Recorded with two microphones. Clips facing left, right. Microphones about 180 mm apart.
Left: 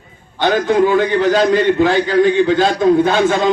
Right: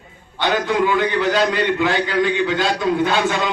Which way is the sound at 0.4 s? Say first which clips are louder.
Left 5 dB; 45° left (ahead or behind).